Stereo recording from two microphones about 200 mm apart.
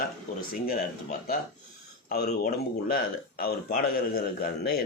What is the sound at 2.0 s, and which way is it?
A man's voice, 50° left (ahead or behind).